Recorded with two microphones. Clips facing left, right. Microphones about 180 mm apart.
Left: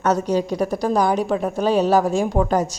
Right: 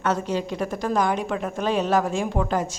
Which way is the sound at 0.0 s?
40° left (ahead or behind).